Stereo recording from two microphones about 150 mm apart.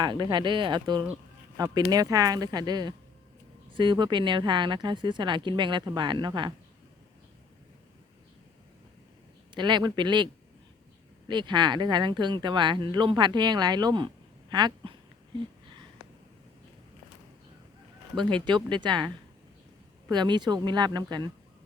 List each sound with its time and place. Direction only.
0.0 s speech: 30° right (ahead or behind)
9.6 s speech: 30° right (ahead or behind)
11.3 s speech: 30° right (ahead or behind)
18.4 s speech: 30° right (ahead or behind)